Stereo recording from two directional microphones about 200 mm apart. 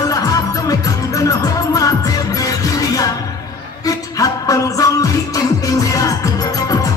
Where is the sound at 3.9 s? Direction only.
15° left (ahead or behind).